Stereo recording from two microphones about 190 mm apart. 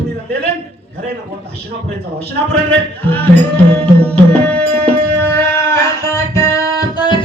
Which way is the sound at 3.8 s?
5° left (ahead or behind).